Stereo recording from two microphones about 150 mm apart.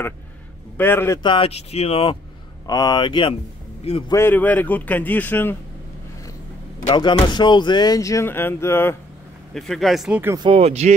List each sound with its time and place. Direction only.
0.7 s a man's voice: 15° left (ahead or behind)
1.2 s speech: 35° left (ahead or behind)
2.6 s a sound: 25° left (ahead or behind)
4.1 s a man's voice: 15° left (ahead or behind)
7.0 s a sound: 30° left (ahead or behind)
9.5 s speech: centre (ahead or behind)
10.4 s speech: 40° right (ahead or behind)